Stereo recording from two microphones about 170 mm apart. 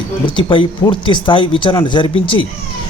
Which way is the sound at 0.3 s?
30° left (ahead or behind).